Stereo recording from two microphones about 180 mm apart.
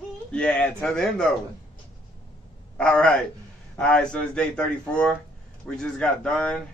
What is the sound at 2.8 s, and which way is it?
A man's voice, 5° left (ahead or behind).